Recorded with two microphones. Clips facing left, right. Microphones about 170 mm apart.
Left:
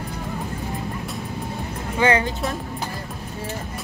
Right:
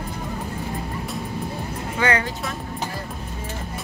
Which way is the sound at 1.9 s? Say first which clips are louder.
Left 3 dB; 25° left (ahead or behind).